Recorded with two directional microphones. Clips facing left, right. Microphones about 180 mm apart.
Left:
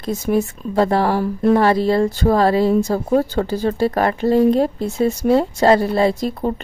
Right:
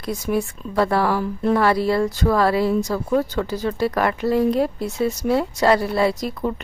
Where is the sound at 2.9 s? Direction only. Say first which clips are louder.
Left 3 dB; 40° left (ahead or behind).